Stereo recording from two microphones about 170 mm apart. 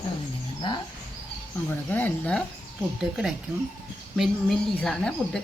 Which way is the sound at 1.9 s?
10° left (ahead or behind).